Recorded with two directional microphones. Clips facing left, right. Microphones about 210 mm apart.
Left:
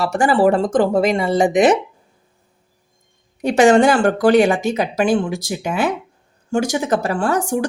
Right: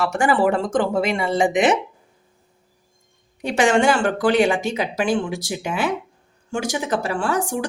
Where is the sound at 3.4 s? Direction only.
40° left (ahead or behind).